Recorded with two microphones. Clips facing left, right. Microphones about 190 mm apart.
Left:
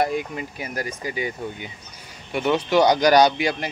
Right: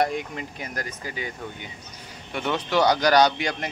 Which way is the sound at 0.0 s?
5° left (ahead or behind).